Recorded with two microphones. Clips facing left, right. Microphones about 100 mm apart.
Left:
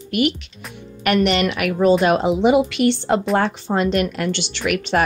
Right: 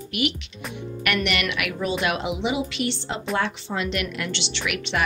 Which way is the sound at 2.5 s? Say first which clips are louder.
Left 12 dB; 55° left (ahead or behind).